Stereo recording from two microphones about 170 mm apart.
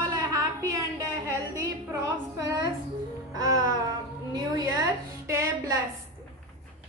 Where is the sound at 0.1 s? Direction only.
20° right (ahead or behind).